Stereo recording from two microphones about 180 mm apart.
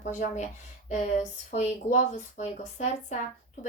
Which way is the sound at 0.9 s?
40° left (ahead or behind).